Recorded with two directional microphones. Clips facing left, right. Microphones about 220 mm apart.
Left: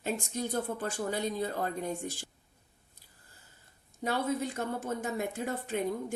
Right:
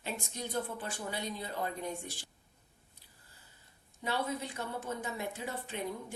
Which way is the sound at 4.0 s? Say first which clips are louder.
Left 5 dB; 45° left (ahead or behind).